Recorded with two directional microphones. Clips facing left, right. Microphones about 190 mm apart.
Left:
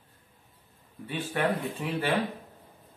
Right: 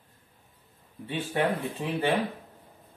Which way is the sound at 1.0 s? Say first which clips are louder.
Right 1 dB; 25° right (ahead or behind).